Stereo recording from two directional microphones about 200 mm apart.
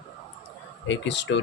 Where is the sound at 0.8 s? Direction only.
65° left (ahead or behind).